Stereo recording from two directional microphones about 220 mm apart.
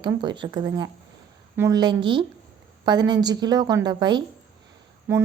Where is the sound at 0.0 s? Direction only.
20° right (ahead or behind).